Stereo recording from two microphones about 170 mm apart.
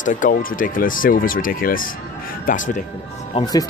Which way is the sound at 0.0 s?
50° left (ahead or behind).